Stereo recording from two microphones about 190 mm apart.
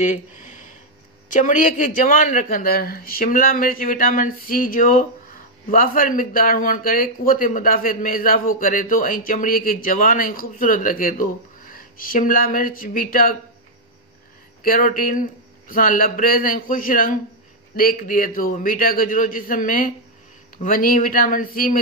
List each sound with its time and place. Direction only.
0.0 s speech: 40° left (ahead or behind)
14.6 s speech: 50° left (ahead or behind)